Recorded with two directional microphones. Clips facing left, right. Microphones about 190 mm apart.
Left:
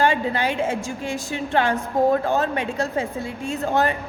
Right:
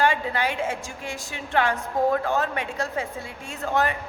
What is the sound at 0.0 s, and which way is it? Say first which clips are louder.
A woman's voice: left 3 dB; 25° left (ahead or behind).